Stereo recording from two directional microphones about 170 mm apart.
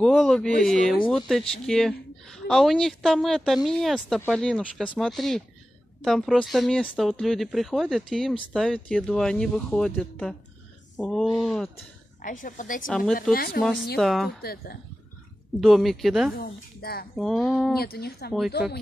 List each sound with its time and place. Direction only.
0.0 s speech: 5° left (ahead or behind)
12.2 s a woman's voice: 50° left (ahead or behind)
12.8 s speech: centre (ahead or behind)
13.3 s speech: 60° left (ahead or behind)
13.6 s speech: centre (ahead or behind)
14.4 s speech: 65° left (ahead or behind)
15.6 s speech: centre (ahead or behind)
16.3 s speech: 60° left (ahead or behind)
17.1 s speech: centre (ahead or behind)
17.7 s speech: 70° left (ahead or behind)
18.6 s speech: 5° right (ahead or behind)